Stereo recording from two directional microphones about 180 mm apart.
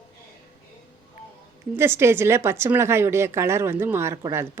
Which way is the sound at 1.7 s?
15° right (ahead or behind).